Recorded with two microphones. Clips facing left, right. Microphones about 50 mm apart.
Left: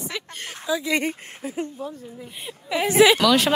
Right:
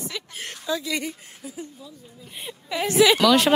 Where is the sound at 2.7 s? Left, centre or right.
Centre.